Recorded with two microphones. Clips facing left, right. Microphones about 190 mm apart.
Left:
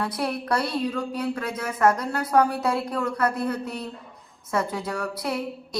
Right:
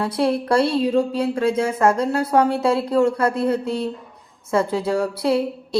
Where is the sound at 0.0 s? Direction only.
30° right (ahead or behind).